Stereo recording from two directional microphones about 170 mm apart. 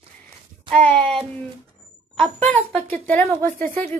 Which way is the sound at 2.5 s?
5° left (ahead or behind).